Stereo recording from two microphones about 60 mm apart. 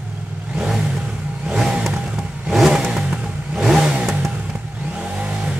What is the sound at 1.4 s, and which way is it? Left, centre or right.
Music, centre.